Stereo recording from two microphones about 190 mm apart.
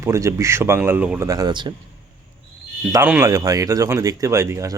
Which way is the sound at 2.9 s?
10° right (ahead or behind).